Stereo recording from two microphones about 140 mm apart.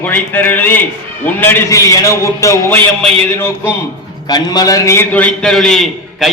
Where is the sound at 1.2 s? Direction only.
15° left (ahead or behind).